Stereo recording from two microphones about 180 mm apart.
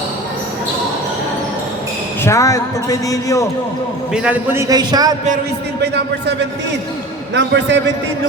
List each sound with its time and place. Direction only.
2.2 s a man's voice: 15° left (ahead or behind)
4.1 s a man's voice: 5° right (ahead or behind)
4.7 s a man's voice: 20° right (ahead or behind)
5.8 s speech: 70° right (ahead or behind)
7.3 s speech: 75° right (ahead or behind)